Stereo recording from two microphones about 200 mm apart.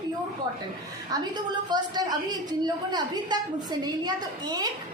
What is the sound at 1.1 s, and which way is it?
A woman's voice, 20° right (ahead or behind).